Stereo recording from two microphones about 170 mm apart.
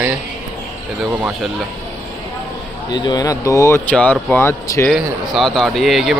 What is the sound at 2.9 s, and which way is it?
Speech, 25° left (ahead or behind).